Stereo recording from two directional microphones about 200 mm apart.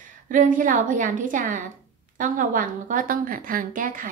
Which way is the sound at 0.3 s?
40° right (ahead or behind).